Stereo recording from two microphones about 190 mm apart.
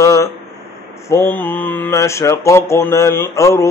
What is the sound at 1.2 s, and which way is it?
Mantra, 10° left (ahead or behind).